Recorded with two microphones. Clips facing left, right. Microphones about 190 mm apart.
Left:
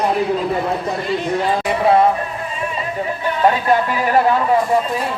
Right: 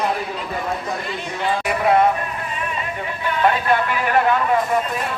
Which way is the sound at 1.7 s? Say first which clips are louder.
Left 2 dB; 30° left (ahead or behind).